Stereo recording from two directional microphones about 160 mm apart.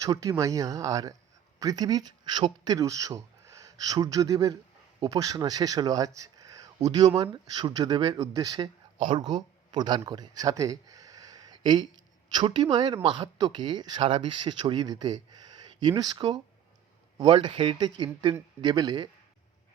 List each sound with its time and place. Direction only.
0.0 s speech: 20° right (ahead or behind)
6.1 s a sound: 20° right (ahead or behind)
7.2 s speech: 25° right (ahead or behind)